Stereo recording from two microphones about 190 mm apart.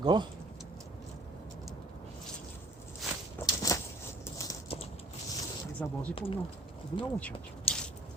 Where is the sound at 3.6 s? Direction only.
20° left (ahead or behind).